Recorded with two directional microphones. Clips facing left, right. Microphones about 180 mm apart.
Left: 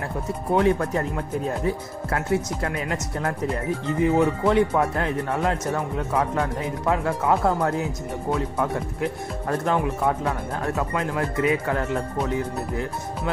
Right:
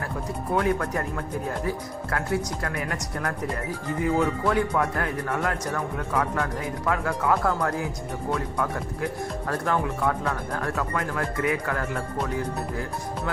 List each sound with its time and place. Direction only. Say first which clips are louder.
0.6 s speech: left 4 dB; 25° left (ahead or behind)